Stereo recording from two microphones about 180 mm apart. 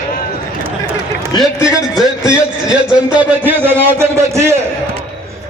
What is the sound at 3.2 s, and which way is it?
A man's voice, 10° right (ahead or behind).